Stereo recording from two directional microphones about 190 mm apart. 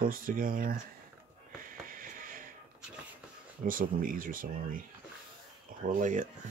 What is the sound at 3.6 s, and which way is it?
Speech, 45° right (ahead or behind).